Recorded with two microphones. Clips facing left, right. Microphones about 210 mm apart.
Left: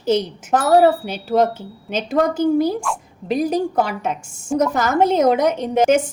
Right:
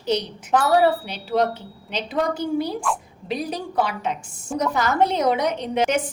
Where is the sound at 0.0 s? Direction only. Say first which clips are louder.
Left 5 dB; 45° left (ahead or behind).